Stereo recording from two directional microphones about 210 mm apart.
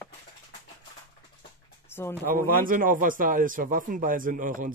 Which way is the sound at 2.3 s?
40° right (ahead or behind).